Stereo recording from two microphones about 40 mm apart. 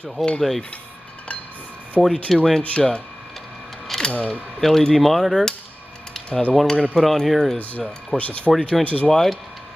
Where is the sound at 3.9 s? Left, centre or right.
Centre.